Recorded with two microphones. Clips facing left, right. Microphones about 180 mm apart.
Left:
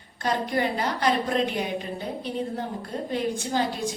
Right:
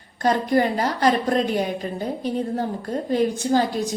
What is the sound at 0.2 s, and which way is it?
A woman's voice, 40° right (ahead or behind).